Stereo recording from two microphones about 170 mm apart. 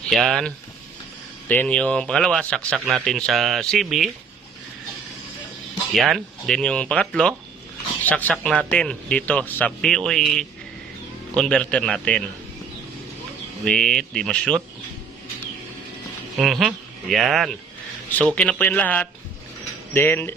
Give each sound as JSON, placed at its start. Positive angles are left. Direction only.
{"t": 0.1, "sound": "speech", "side_deg": 0}
{"t": 1.5, "sound": "speech", "side_deg": 10}
{"t": 5.9, "sound": "speech", "side_deg": 0}
{"t": 13.7, "sound": "speech", "side_deg": 5}
{"t": 16.3, "sound": "speech", "side_deg": 0}